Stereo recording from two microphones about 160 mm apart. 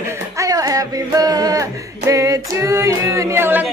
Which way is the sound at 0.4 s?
20° right (ahead or behind).